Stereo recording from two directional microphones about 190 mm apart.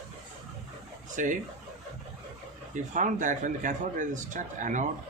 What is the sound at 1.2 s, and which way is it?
Speech, 40° right (ahead or behind).